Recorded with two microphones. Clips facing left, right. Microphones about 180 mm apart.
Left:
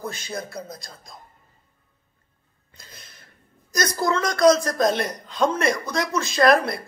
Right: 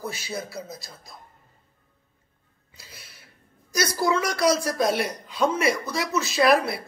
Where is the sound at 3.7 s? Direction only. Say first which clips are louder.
Even; 10° right (ahead or behind).